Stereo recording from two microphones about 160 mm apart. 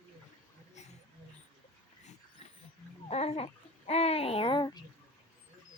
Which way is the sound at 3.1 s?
40° left (ahead or behind).